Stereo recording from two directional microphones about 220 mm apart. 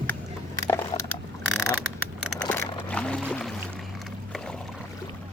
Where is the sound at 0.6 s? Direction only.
10° left (ahead or behind).